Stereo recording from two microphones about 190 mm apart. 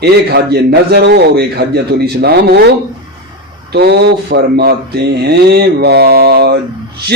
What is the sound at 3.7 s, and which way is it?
A man's voice, 60° right (ahead or behind).